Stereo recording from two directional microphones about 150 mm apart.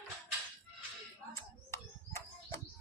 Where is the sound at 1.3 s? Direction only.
15° left (ahead or behind).